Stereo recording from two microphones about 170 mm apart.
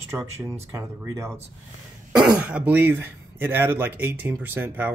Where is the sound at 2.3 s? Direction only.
10° right (ahead or behind).